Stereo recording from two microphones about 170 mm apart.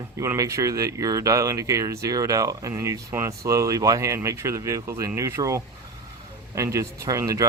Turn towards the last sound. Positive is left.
turn(degrees=-20)  # may be behind; listen again after turning